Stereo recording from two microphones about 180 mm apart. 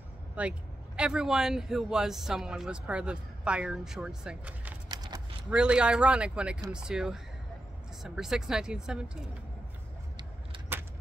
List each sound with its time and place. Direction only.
0.4 s speech: 5° right (ahead or behind)
4.8 s a sound: 20° right (ahead or behind)
5.5 s speech: 5° right (ahead or behind)
10.7 s keys jangling: 10° right (ahead or behind)